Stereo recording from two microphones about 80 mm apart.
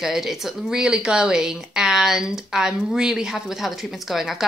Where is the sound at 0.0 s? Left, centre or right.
Centre.